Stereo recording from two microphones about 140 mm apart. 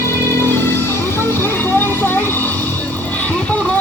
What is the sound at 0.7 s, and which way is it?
Music, 15° left (ahead or behind).